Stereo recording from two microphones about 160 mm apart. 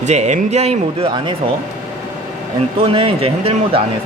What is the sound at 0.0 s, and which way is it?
Speech, 45° right (ahead or behind).